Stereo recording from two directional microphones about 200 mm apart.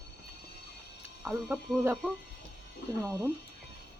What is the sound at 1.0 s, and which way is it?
Speech, 10° right (ahead or behind).